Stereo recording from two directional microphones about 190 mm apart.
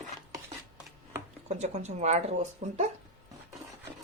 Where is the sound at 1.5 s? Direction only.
35° right (ahead or behind).